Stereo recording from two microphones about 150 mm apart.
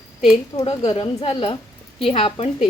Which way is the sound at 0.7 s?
35° left (ahead or behind).